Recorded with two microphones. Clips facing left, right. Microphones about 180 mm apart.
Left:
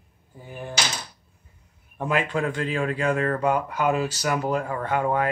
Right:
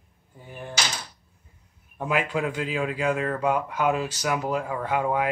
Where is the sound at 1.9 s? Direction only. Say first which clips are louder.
Left 1 dB; 5° right (ahead or behind).